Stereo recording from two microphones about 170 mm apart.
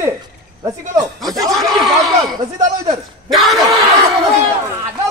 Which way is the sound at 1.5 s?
Centre (ahead or behind).